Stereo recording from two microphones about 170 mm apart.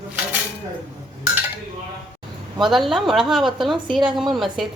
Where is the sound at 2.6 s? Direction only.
Centre (ahead or behind).